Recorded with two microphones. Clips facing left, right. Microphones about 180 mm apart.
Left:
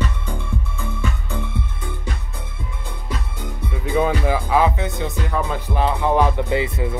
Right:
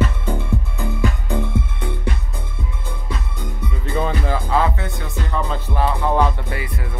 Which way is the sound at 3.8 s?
10° left (ahead or behind).